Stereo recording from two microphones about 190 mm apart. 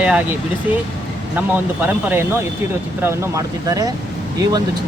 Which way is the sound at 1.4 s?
10° right (ahead or behind).